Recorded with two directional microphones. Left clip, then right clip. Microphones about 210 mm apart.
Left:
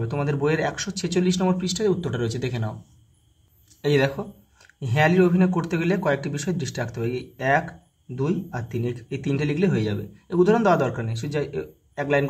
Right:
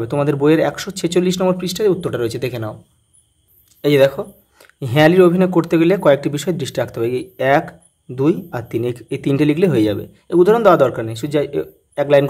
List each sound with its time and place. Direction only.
0.0 s speech: 40° right (ahead or behind)
3.8 s speech: 35° right (ahead or behind)